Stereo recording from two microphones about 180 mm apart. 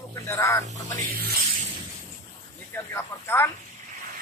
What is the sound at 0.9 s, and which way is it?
Music, 55° right (ahead or behind).